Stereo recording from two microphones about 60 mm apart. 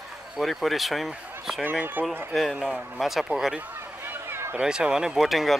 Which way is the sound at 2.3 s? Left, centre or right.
Centre.